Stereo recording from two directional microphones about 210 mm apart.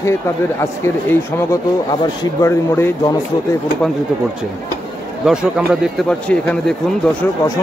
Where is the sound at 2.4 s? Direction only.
10° left (ahead or behind).